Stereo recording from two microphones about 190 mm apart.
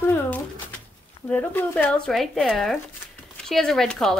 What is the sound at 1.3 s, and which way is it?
A woman's voice, 10° left (ahead or behind).